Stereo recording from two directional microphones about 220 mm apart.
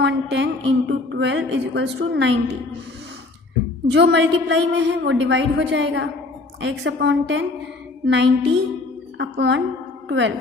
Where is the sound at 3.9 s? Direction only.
55° right (ahead or behind).